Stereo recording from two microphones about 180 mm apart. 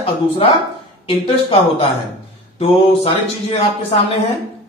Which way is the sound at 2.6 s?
30° left (ahead or behind).